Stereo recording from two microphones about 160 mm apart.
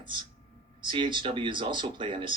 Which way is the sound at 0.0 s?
30° right (ahead or behind).